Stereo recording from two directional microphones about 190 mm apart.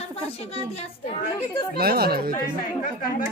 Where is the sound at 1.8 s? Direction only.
55° right (ahead or behind).